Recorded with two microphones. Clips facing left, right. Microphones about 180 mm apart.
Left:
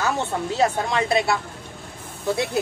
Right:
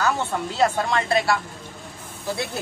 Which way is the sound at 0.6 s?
20° left (ahead or behind).